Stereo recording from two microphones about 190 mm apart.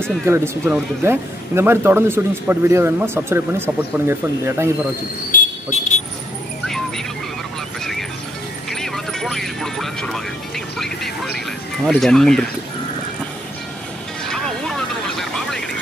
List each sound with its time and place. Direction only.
0.2 s speech: 10° right (ahead or behind)
5.3 s vehicle: 40° left (ahead or behind)
8.6 s vehicle: centre (ahead or behind)
11.8 s speech: centre (ahead or behind)
14.2 s vehicle: 5° left (ahead or behind)